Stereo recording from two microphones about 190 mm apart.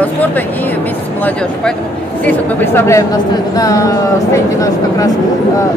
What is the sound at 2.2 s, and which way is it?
Speech, 10° left (ahead or behind).